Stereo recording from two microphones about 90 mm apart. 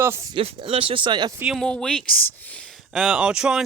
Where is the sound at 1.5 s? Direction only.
5° left (ahead or behind).